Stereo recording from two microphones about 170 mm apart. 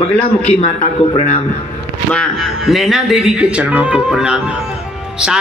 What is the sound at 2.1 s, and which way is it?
Speech, centre (ahead or behind).